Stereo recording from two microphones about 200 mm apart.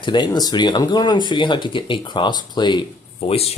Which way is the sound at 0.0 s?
25° left (ahead or behind).